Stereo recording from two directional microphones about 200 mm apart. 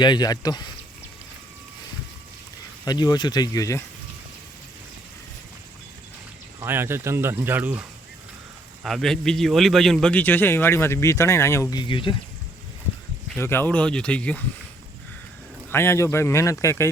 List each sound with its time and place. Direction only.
0.0 s speech: 20° left (ahead or behind)
2.8 s speech: 20° left (ahead or behind)
6.6 s speech: 10° right (ahead or behind)
8.8 s a man's voice: centre (ahead or behind); by 12.1 s 25° left (ahead or behind)
13.3 s a man's voice: 10° left (ahead or behind)
15.7 s a man's voice: 10° left (ahead or behind)